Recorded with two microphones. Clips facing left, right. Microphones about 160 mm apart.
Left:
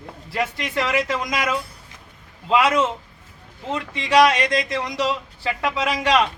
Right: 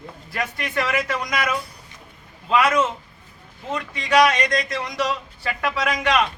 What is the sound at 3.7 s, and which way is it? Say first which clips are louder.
Speech: even; 25° left (ahead or behind).